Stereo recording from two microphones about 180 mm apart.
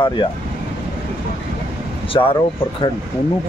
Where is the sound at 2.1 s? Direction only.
20° left (ahead or behind).